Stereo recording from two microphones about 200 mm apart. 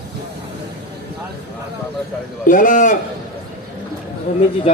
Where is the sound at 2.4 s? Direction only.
40° left (ahead or behind).